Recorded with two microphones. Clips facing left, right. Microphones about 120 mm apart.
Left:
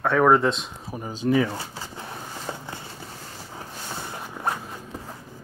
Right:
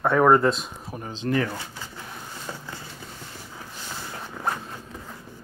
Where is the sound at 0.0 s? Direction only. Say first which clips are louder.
Right 1 dB; 5° right (ahead or behind).